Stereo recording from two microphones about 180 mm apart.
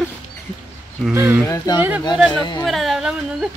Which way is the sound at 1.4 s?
15° left (ahead or behind).